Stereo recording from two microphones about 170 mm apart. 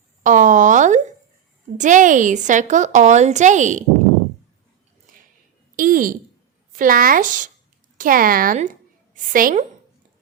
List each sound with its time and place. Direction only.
0.2 s a woman's voice: 50° right (ahead or behind)
5.1 s a sound: 50° right (ahead or behind)
6.7 s a woman's voice: 55° right (ahead or behind)